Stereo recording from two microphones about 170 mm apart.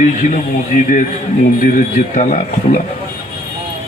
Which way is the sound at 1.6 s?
50° left (ahead or behind).